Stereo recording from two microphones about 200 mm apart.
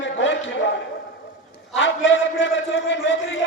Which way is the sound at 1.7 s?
65° left (ahead or behind).